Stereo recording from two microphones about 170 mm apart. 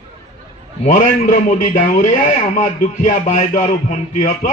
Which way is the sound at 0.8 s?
45° left (ahead or behind).